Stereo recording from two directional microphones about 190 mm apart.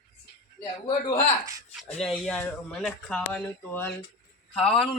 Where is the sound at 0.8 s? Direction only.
25° left (ahead or behind).